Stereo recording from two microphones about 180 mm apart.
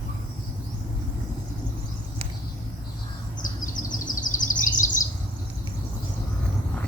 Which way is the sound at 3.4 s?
45° left (ahead or behind).